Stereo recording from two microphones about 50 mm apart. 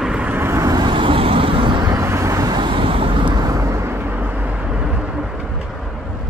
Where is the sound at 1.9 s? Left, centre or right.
Right.